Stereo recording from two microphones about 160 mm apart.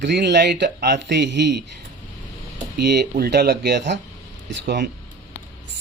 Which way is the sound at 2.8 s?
90° right.